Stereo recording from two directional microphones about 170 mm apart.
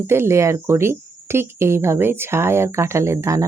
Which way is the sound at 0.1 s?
15° right (ahead or behind).